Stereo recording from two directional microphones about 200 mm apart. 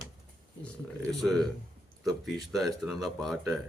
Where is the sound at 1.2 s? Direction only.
Centre (ahead or behind).